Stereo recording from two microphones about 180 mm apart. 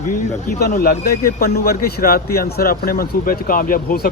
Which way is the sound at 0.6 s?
50° left (ahead or behind).